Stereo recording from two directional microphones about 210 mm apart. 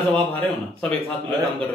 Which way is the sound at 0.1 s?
5° left (ahead or behind).